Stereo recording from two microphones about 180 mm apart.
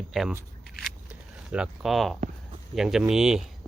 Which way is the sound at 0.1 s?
Centre (ahead or behind).